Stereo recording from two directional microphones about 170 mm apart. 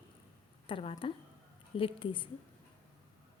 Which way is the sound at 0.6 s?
30° left (ahead or behind).